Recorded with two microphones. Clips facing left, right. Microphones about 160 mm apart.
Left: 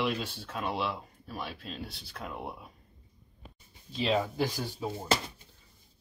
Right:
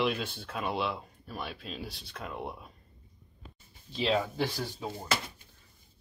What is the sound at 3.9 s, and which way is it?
Speech, centre (ahead or behind).